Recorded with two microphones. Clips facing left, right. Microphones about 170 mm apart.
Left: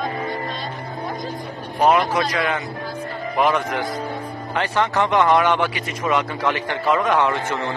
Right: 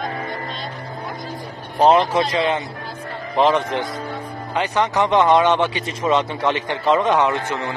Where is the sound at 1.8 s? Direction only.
30° right (ahead or behind).